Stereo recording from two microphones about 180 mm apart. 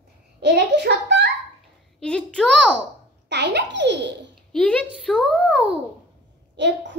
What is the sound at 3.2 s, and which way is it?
Babbling, 75° right (ahead or behind).